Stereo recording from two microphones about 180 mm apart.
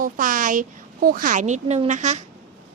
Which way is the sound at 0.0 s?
50° right (ahead or behind).